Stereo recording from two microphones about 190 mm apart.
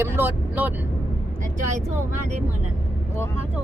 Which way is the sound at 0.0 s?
10° right (ahead or behind).